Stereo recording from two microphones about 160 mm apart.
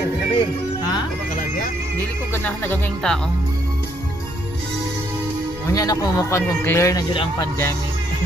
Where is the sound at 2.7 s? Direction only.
5° left (ahead or behind).